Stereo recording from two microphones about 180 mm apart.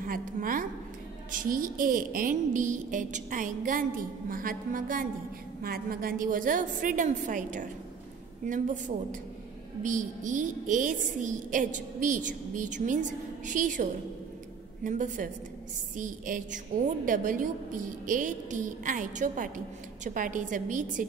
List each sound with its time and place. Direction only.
0.0 s a woman's voice: 50° right (ahead or behind)